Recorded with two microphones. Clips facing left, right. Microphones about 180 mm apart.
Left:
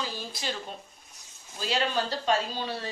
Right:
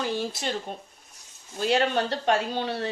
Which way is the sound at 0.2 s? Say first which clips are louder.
Right 6 dB; 65° right (ahead or behind).